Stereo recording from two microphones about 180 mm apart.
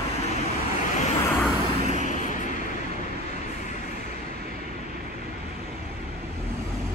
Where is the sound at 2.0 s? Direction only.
40° left (ahead or behind).